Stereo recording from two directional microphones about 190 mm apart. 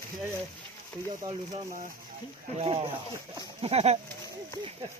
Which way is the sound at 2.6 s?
30° right (ahead or behind).